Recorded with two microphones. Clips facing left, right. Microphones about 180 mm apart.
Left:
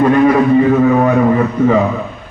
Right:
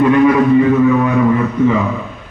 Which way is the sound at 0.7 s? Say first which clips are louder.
Left 1 dB; 45° left (ahead or behind).